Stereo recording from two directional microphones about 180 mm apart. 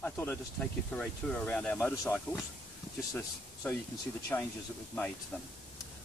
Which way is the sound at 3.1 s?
15° left (ahead or behind).